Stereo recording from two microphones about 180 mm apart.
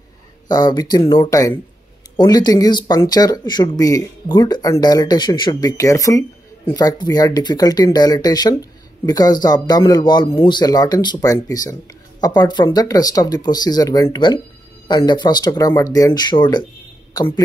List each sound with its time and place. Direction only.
0.5 s speech: 20° left (ahead or behind)
1.3 s speech: 20° left (ahead or behind)